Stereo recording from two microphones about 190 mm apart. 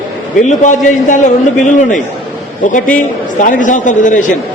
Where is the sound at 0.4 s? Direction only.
40° left (ahead or behind).